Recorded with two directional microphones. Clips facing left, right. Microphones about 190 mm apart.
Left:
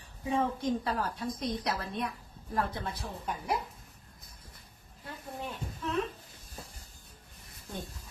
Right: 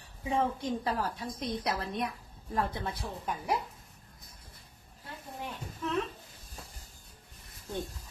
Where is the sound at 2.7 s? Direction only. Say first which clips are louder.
Right 1 dB; 20° right (ahead or behind).